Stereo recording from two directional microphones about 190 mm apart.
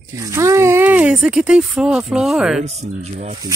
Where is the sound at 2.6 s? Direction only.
35° right (ahead or behind).